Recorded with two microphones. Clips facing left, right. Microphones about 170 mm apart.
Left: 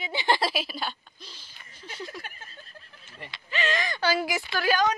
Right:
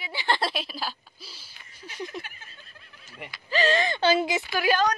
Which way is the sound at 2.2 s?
40° left (ahead or behind).